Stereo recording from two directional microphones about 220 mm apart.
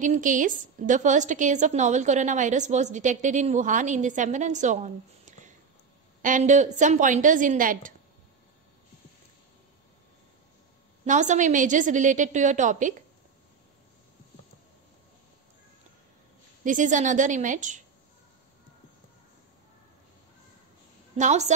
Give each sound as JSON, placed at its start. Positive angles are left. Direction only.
{"t": 0.0, "sound": "a woman's voice", "side_deg": -35}
{"t": 11.1, "sound": "a woman's voice", "side_deg": -35}
{"t": 16.6, "sound": "a woman's voice", "side_deg": -35}
{"t": 21.2, "sound": "a woman's voice", "side_deg": -30}